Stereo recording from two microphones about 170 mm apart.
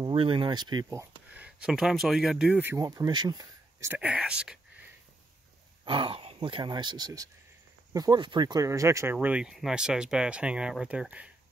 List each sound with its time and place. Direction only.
0.0 s speech: 30° right (ahead or behind)
1.3 s speech: 5° right (ahead or behind)
2.8 s speech: 20° right (ahead or behind)
3.9 s speech: 5° right (ahead or behind)
5.9 s speech: 30° right (ahead or behind); by 11.2 s 5° right (ahead or behind)